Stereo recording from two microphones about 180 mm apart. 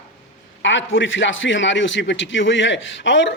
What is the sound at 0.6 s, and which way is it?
A man's voice, 90° left.